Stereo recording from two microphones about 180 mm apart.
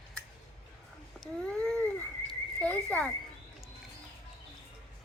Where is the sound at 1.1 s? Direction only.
Centre (ahead or behind).